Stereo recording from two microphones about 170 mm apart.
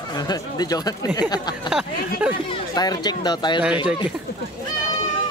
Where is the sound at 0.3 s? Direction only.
25° left (ahead or behind).